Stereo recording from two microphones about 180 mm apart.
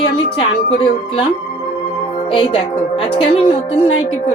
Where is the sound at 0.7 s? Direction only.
30° left (ahead or behind).